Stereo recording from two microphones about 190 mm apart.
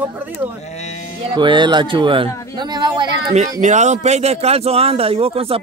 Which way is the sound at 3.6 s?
40° right (ahead or behind).